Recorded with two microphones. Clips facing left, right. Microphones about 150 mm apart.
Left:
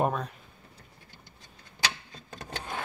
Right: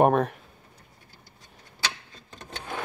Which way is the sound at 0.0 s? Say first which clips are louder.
Right 8 dB; 60° right (ahead or behind).